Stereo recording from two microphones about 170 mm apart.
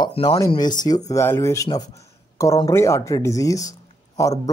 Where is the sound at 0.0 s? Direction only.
30° left (ahead or behind).